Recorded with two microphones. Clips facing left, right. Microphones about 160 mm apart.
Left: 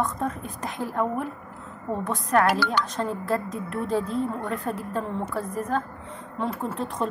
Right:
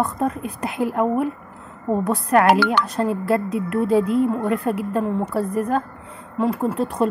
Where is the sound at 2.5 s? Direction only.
65° right (ahead or behind).